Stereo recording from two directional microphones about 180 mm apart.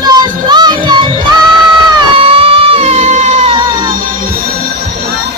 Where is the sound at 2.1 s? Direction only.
30° right (ahead or behind).